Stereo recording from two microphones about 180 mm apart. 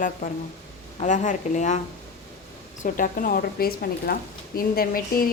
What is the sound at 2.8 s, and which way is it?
A woman's voice, 50° left (ahead or behind).